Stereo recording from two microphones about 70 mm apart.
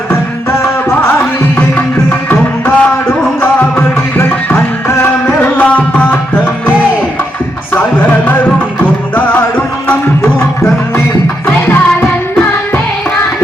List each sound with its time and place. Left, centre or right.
2.0 s music: left